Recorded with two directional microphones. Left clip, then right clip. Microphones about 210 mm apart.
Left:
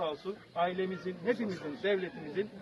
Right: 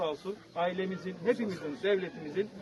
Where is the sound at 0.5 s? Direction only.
40° right (ahead or behind).